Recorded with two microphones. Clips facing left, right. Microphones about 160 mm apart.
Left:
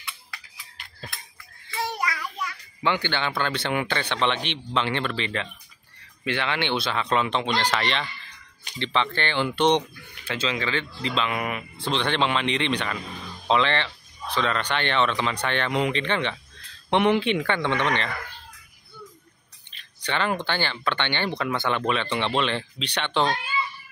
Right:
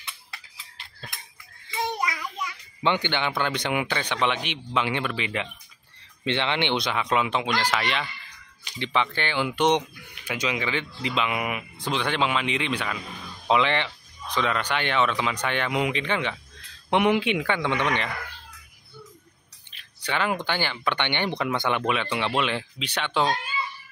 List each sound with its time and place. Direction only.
0.0 s a sound: 25° right (ahead or behind)
1.7 s a child's voice: 20° right (ahead or behind)
19.7 s speech: 10° right (ahead or behind)